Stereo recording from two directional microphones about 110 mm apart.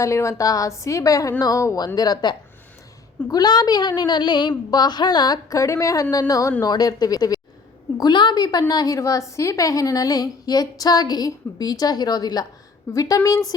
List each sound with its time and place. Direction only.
0.0 s a woman's voice: 25° left (ahead or behind)